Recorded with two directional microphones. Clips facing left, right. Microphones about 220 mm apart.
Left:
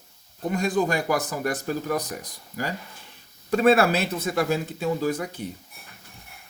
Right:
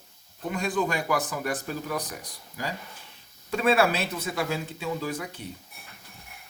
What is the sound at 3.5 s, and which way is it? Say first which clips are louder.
Speech: left 4 dB; 45° left (ahead or behind).